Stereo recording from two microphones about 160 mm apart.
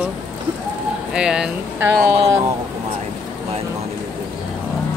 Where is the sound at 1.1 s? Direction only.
5° right (ahead or behind).